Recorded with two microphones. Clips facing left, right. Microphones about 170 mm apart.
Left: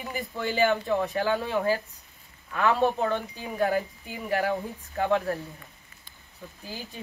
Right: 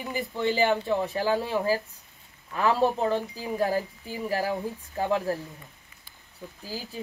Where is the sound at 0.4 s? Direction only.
30° right (ahead or behind).